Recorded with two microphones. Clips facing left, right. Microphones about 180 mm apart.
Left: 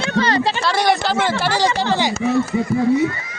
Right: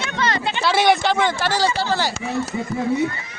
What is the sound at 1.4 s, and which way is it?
Speech, 15° left (ahead or behind).